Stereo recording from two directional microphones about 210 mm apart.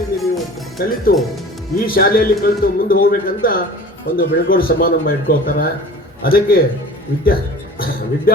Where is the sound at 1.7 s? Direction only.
45° left (ahead or behind).